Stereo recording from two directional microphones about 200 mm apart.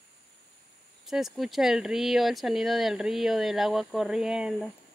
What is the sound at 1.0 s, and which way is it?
Speech, centre (ahead or behind).